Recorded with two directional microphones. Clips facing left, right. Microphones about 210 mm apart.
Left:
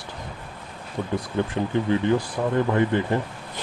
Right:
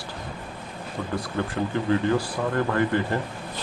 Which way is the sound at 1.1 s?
20° left (ahead or behind).